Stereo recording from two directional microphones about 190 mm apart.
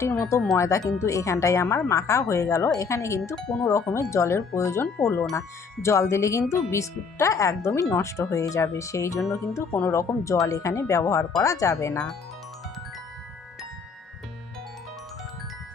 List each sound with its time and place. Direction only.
0.0 s speech: 15° left (ahead or behind)
3.3 s speech: 5° left (ahead or behind)
4.1 s speech: 15° left (ahead or behind)